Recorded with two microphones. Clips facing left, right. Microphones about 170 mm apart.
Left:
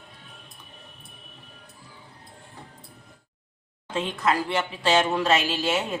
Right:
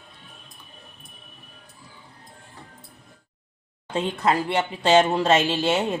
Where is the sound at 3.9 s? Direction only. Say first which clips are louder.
Right 2 dB; 30° right (ahead or behind).